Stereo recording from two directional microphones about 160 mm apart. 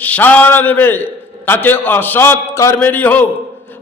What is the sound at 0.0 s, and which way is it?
A man's voice, 10° left (ahead or behind).